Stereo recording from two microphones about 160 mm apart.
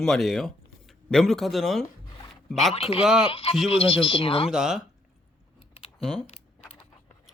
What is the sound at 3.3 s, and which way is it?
Speech, 35° left (ahead or behind).